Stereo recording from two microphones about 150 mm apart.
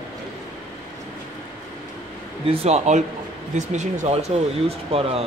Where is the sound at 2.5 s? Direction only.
45° right (ahead or behind).